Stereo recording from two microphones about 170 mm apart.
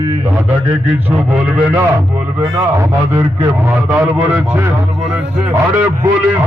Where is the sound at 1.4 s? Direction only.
5° right (ahead or behind).